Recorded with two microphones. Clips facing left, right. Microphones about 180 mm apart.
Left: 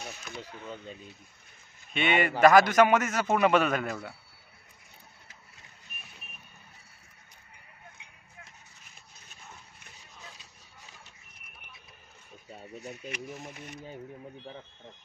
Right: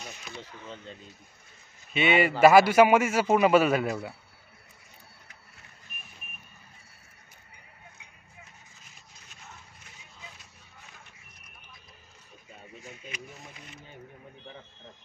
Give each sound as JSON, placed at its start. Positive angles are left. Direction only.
{"t": 0.4, "sound": "speech", "side_deg": 10}
{"t": 2.0, "sound": "a man's voice", "side_deg": -10}
{"t": 12.7, "sound": "a sound", "side_deg": 40}
{"t": 13.0, "sound": "speech", "side_deg": 50}